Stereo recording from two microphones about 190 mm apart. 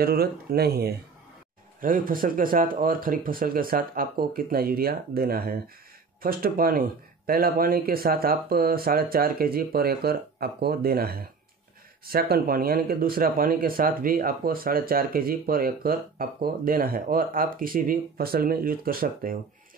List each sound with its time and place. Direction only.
0.0 s speech: 55° right (ahead or behind)